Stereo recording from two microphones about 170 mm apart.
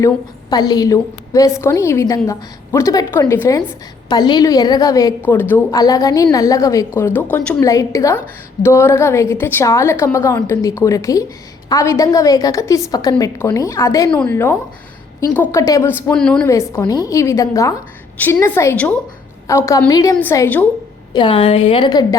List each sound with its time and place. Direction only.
0.5 s a woman's voice: 25° left (ahead or behind)
4.1 s a woman's voice: 25° left (ahead or behind)
14.1 s a woman's voice: 10° left (ahead or behind)
16.5 s a woman's voice: 20° left (ahead or behind)
21.1 s a woman's voice: 30° left (ahead or behind)